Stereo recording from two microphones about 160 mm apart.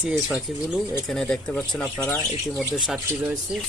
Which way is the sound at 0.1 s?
5° right (ahead or behind).